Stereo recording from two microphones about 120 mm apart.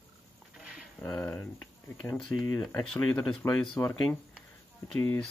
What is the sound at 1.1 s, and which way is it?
Speech, 10° left (ahead or behind).